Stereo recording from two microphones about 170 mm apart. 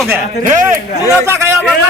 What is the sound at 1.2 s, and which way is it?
Speech, 15° right (ahead or behind).